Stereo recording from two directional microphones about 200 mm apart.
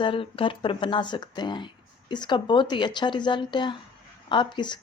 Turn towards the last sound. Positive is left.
turn(degrees=20)  # may be behind; listen again after turning